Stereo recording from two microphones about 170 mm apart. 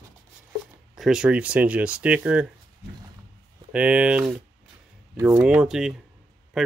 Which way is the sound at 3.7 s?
5° right (ahead or behind).